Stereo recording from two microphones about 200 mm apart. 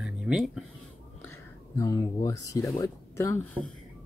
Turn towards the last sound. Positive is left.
turn(degrees=15)  # may be behind; listen again after turning